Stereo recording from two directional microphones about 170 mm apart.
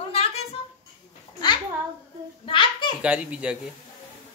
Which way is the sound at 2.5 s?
30° left (ahead or behind).